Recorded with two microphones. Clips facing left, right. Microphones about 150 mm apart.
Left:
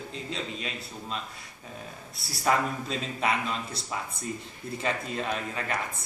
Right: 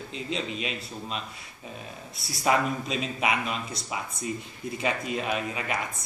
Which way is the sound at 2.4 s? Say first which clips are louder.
Right 2 dB; 15° right (ahead or behind).